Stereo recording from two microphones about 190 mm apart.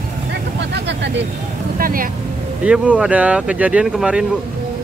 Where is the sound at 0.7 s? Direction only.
65° right (ahead or behind).